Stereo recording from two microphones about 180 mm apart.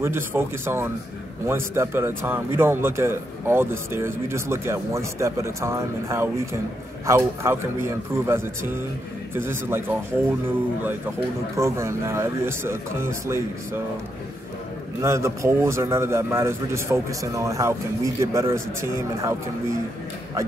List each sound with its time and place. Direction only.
0.0 s a man's voice: 15° right (ahead or behind)
11.5 s a man's voice: 15° right (ahead or behind)
15.0 s a man's voice: 15° right (ahead or behind)